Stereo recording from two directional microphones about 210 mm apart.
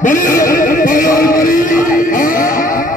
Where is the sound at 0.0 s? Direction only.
40° left (ahead or behind).